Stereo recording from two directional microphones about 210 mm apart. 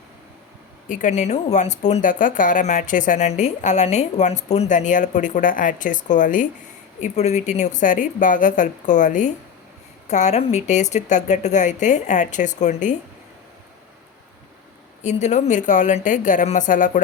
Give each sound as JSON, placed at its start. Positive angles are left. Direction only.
{"t": 0.9, "sound": "speech", "side_deg": 35}
{"t": 15.0, "sound": "speech", "side_deg": 35}